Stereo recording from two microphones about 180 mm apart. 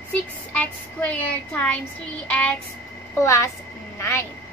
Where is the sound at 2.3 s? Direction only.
10° left (ahead or behind).